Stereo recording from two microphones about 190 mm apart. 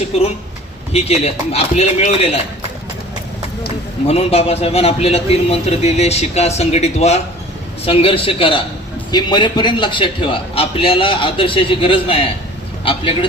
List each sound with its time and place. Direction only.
0.9 s a man's voice: 35° left (ahead or behind)
4.1 s a man's voice: 30° left (ahead or behind)